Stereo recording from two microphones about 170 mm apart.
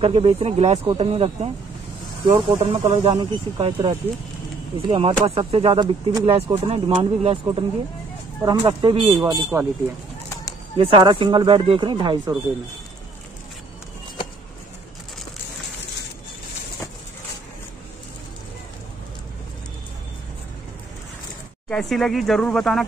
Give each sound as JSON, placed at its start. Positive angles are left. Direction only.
{"t": 0.0, "sound": "speech", "side_deg": -35}
{"t": 8.4, "sound": "speech", "side_deg": -20}
{"t": 10.8, "sound": "speech", "side_deg": -30}
{"t": 21.6, "sound": "speech", "side_deg": 5}